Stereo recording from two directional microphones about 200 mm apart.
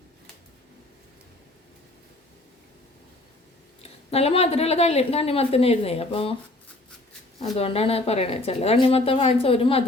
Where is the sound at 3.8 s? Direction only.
30° left (ahead or behind).